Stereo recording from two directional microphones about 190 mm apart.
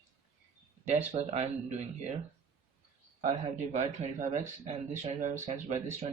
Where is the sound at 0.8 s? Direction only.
35° right (ahead or behind).